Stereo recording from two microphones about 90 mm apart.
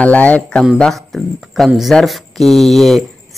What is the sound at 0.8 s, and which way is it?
Speech, 5° left (ahead or behind).